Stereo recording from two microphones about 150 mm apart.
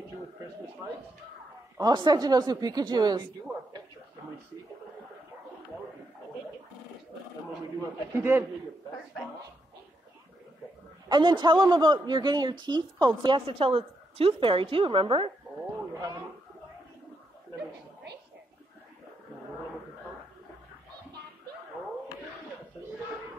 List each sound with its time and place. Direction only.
1.8 s speech: 30° right (ahead or behind)
8.2 s a man's voice: 15° right (ahead or behind)
11.1 s speech: 30° right (ahead or behind)
15.9 s speech: 25° right (ahead or behind)